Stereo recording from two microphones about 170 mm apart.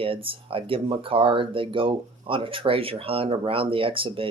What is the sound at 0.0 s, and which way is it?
Speech, 30° right (ahead or behind).